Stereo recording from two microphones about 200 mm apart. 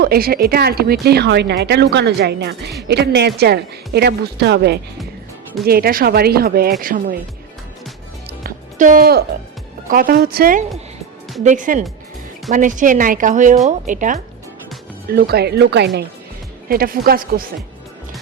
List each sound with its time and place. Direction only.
0.0 s a woman's voice: 50° right (ahead or behind)
8.4 s music: 45° right (ahead or behind)
9.9 s a woman's voice: 45° right (ahead or behind)